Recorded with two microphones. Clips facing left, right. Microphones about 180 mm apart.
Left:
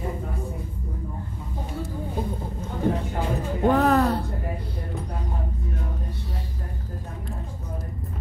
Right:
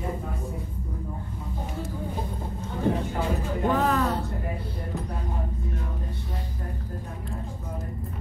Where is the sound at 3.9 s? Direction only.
35° left (ahead or behind).